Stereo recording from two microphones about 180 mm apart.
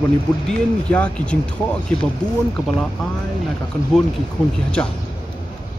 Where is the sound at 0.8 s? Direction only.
5° left (ahead or behind).